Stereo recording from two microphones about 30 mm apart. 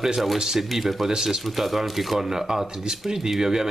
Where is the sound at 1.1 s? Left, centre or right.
Centre.